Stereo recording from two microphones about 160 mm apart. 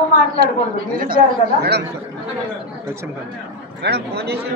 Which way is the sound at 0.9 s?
65° right (ahead or behind).